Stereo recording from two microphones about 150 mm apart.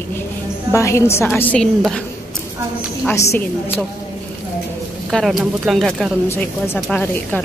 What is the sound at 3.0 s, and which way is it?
Speech, 15° left (ahead or behind).